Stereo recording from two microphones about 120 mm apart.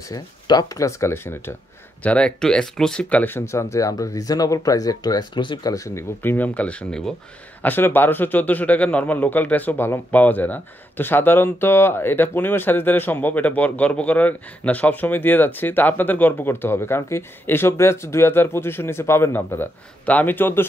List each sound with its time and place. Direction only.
0.1 s speech: 35° left (ahead or behind)
2.0 s a man's voice: 10° left (ahead or behind)